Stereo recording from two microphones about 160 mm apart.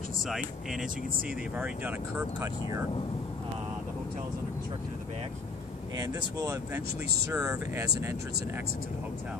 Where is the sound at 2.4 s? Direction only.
20° right (ahead or behind).